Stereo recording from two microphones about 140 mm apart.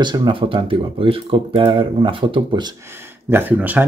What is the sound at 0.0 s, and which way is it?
Speech, 35° right (ahead or behind).